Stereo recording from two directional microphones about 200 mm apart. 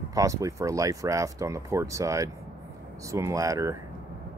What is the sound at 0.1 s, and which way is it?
Speech, 15° right (ahead or behind).